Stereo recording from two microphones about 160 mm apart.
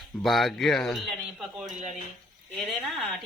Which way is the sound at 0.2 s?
Centre (ahead or behind).